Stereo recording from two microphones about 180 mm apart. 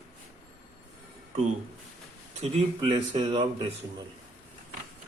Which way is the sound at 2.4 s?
30° right (ahead or behind).